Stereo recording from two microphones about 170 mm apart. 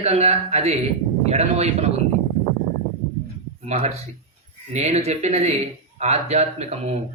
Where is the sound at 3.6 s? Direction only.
40° right (ahead or behind).